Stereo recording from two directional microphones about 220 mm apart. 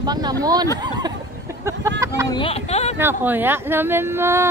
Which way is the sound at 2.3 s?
25° left (ahead or behind).